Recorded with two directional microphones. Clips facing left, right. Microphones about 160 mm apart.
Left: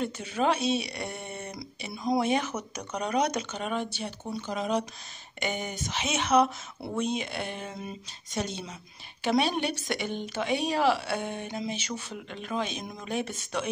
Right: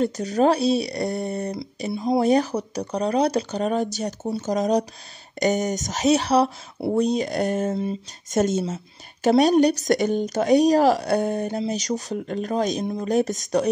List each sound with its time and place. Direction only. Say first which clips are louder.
0.0 s a woman's voice: right 8 dB; 40° right (ahead or behind)
8.3 s a woman's voice: right 12 dB; 45° right (ahead or behind)